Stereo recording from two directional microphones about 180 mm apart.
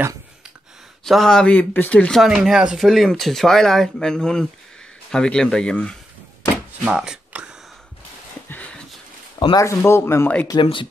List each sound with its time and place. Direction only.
1.0 s speech: centre (ahead or behind)
6.8 s shuffling cards: 5° right (ahead or behind)
8.5 s a sound: 10° left (ahead or behind)
9.4 s speech: 20° left (ahead or behind)
10.5 s speech: 25° left (ahead or behind)